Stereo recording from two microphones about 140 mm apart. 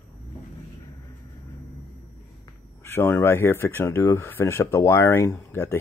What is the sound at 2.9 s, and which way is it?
Speech, 15° left (ahead or behind).